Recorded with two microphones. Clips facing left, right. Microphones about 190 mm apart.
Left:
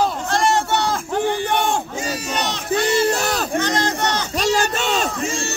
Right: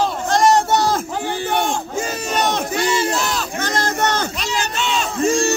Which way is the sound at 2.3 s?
50° right (ahead or behind).